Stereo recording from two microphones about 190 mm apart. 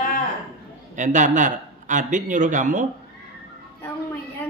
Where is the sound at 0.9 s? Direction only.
40° right (ahead or behind).